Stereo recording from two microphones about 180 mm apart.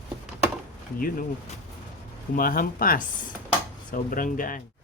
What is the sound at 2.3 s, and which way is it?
Speech, 50° left (ahead or behind).